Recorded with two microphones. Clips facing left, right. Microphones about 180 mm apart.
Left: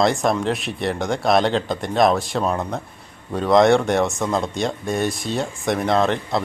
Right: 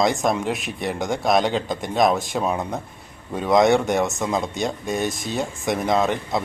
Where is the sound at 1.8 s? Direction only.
Centre (ahead or behind).